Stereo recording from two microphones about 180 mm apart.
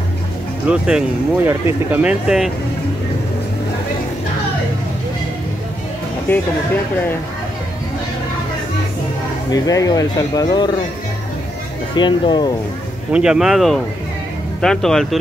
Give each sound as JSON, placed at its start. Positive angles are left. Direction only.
{"t": 0.7, "sound": "speech", "side_deg": -5}
{"t": 6.3, "sound": "speech", "side_deg": 10}
{"t": 9.5, "sound": "speech", "side_deg": 20}
{"t": 11.9, "sound": "speech", "side_deg": 25}
{"t": 13.1, "sound": "speech", "side_deg": -5}